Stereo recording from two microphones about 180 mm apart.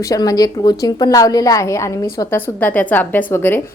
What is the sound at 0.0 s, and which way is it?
A woman's voice, 20° left (ahead or behind).